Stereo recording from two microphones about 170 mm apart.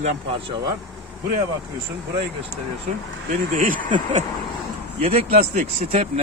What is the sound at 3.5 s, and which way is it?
Speech, 50° right (ahead or behind).